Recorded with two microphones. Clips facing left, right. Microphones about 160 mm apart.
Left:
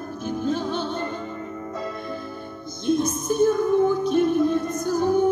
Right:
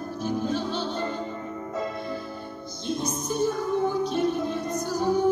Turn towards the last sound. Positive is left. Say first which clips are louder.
# left 3 dB
turn(degrees=50)  # may be behind; listen again after turning